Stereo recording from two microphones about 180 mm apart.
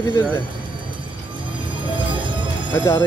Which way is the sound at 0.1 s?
25° right (ahead or behind).